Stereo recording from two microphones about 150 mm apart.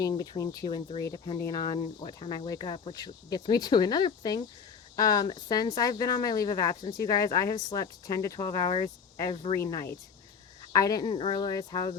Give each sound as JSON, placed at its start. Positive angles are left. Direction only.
{"t": 0.0, "sound": "speech", "side_deg": 25}
{"t": 9.3, "sound": "speech", "side_deg": 35}
{"t": 9.6, "sound": "speech", "side_deg": 25}
{"t": 11.0, "sound": "speech", "side_deg": 35}